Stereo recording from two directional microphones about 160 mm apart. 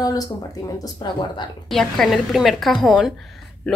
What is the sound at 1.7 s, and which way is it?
Speech, centre (ahead or behind).